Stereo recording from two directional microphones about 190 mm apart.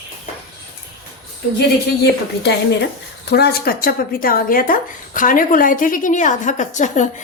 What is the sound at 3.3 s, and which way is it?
Speech, 55° left (ahead or behind).